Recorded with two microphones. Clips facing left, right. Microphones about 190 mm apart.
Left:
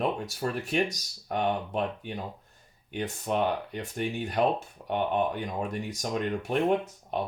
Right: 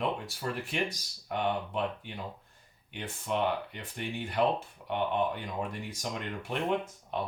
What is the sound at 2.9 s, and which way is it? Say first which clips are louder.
Speech: left 4 dB; 45° left (ahead or behind).